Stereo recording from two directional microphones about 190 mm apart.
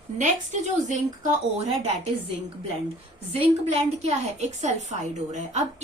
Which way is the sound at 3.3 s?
30° right (ahead or behind).